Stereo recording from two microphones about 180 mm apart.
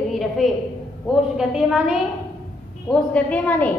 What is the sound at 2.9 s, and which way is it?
Speech, 5° left (ahead or behind).